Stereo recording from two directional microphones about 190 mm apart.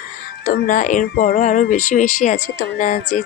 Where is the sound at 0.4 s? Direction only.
45° left (ahead or behind).